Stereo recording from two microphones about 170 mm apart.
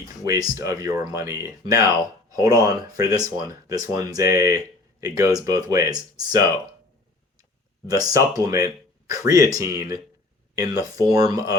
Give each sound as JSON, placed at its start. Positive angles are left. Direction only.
{"t": 0.3, "sound": "speech", "side_deg": -20}
{"t": 7.9, "sound": "speech", "side_deg": -20}